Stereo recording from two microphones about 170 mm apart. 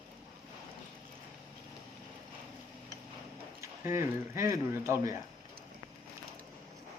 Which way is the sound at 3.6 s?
15° right (ahead or behind).